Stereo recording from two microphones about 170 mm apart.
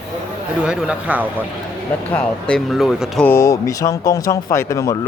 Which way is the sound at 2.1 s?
5° left (ahead or behind).